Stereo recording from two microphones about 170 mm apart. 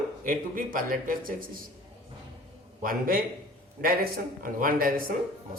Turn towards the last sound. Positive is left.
turn(degrees=-60)  # may be behind; listen again after turning